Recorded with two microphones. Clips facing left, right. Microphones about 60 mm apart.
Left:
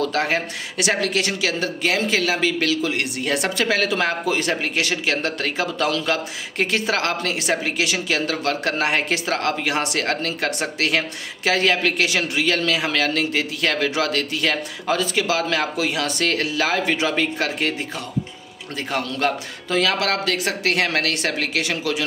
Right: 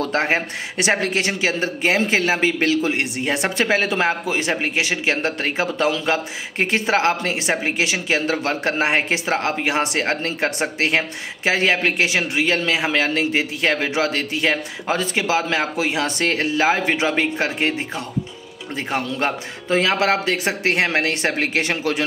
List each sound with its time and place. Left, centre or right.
0.0 s speech: right